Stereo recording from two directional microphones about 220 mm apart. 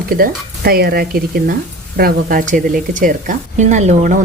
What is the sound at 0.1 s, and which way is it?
Speech, 40° right (ahead or behind).